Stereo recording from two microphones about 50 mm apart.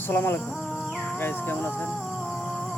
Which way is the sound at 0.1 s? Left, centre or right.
Left.